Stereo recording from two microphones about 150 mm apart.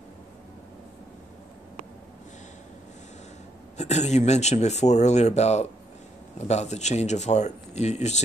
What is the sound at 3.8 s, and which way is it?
Speech, 50° left (ahead or behind).